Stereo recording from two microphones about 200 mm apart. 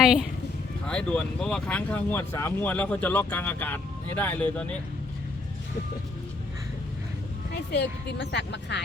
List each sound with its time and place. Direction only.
0.9 s speech: 5° left (ahead or behind)
7.5 s speech: 60° left (ahead or behind)